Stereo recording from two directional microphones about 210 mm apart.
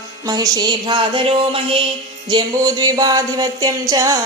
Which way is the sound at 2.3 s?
20° right (ahead or behind).